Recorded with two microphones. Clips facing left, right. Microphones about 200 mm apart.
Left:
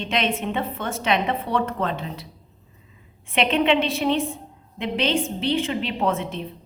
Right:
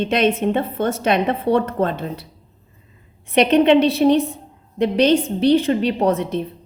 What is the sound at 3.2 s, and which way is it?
A woman's voice, 40° right (ahead or behind).